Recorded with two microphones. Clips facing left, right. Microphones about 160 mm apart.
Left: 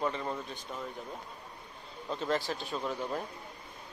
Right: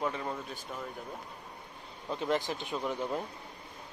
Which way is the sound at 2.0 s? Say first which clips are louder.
Right 1 dB; 15° right (ahead or behind).